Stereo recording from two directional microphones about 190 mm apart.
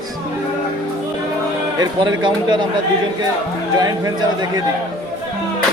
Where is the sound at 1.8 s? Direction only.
25° right (ahead or behind).